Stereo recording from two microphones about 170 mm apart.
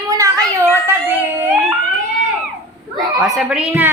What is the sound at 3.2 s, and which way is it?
Speech, 5° right (ahead or behind).